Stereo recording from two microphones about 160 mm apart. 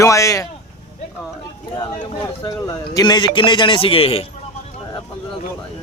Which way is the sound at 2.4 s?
25° left (ahead or behind).